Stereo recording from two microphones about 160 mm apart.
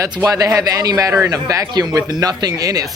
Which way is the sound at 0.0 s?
20° right (ahead or behind).